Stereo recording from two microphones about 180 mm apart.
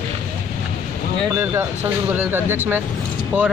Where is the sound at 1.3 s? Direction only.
15° right (ahead or behind).